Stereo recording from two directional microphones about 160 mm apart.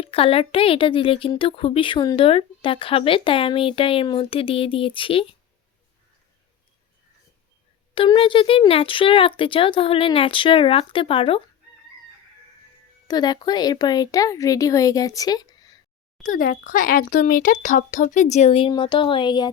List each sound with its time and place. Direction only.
0.0 s speech: 35° left (ahead or behind)
7.9 s speech: 35° left (ahead or behind)
13.1 s speech: 25° left (ahead or behind)
16.2 s speech: 55° left (ahead or behind); by 19.5 s 30° left (ahead or behind)